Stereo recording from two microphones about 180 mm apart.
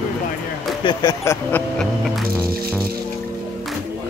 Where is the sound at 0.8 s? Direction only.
25° left (ahead or behind).